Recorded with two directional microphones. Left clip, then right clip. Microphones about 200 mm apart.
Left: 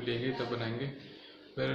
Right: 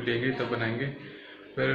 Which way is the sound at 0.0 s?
10° left (ahead or behind).